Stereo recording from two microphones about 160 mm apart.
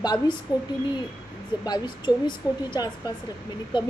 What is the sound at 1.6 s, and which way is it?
Speech, 25° left (ahead or behind).